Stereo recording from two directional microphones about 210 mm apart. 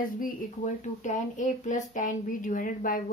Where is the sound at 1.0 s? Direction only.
35° left (ahead or behind).